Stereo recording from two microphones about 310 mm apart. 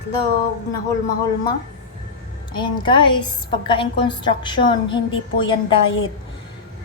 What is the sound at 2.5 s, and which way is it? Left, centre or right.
A woman's voice, centre.